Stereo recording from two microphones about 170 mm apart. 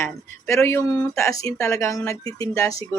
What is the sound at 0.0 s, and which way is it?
A woman's voice, 15° left (ahead or behind).